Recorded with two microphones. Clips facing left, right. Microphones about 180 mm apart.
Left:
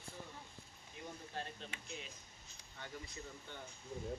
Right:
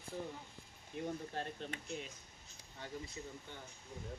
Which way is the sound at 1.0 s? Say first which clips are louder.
Right 6 dB; 50° right (ahead or behind).